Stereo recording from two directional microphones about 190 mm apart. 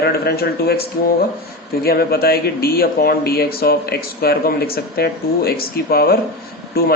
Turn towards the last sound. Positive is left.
turn(degrees=55)  # may be behind; listen again after turning